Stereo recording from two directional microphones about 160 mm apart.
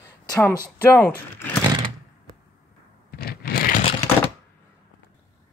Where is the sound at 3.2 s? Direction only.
70° left (ahead or behind).